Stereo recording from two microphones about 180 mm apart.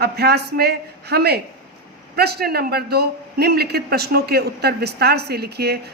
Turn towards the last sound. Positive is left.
turn(degrees=-60)  # may be behind; listen again after turning